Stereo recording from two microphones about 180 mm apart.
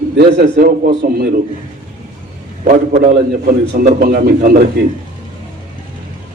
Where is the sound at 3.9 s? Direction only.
55° right (ahead or behind).